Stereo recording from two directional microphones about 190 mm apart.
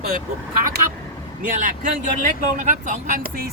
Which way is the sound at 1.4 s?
45° right (ahead or behind).